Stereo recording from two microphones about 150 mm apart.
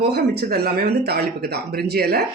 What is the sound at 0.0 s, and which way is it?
Speech, 90° right.